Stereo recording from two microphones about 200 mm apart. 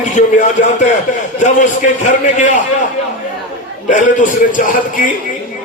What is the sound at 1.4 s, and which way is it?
A man's voice, 40° left (ahead or behind).